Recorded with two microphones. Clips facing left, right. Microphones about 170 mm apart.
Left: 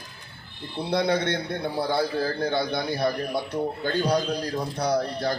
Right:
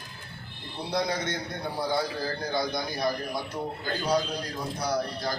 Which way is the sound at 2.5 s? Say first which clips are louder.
Left 3 dB; 65° left (ahead or behind).